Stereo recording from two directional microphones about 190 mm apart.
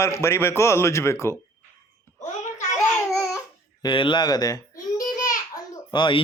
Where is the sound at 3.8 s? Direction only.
25° left (ahead or behind).